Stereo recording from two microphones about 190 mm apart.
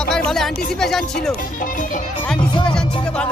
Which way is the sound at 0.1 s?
5° left (ahead or behind).